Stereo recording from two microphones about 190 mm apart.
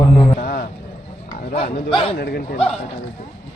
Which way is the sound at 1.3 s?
30° left (ahead or behind).